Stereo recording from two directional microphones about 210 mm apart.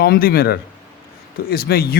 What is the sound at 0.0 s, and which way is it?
A man's voice, 45° left (ahead or behind).